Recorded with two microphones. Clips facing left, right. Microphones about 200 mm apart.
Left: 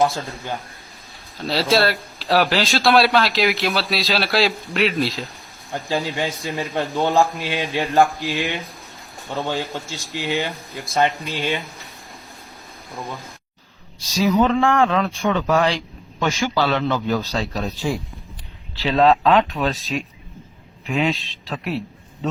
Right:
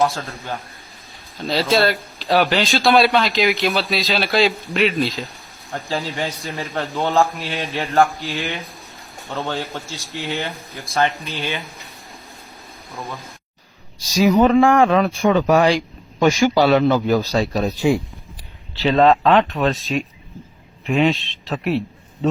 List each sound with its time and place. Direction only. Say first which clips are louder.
1.4 s speech: right 1 dB; centre (ahead or behind)
7.3 s mantra: left 2 dB; 15° left (ahead or behind)
9.3 s speech: left 1 dB; centre (ahead or behind)
11.2 s speech: left 2 dB; 15° left (ahead or behind)
14.1 s speech: right 4 dB; 15° right (ahead or behind)
18.8 s speech: right 2 dB; centre (ahead or behind)